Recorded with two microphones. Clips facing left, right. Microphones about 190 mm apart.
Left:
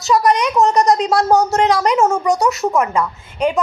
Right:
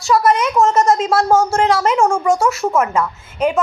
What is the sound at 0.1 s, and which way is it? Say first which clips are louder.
Speech: even; 15° left (ahead or behind).